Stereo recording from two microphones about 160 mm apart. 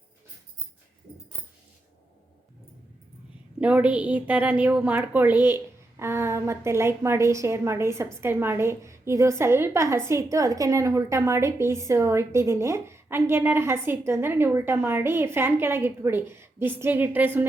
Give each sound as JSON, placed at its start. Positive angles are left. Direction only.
{"t": 3.6, "sound": "a woman's voice", "side_deg": -10}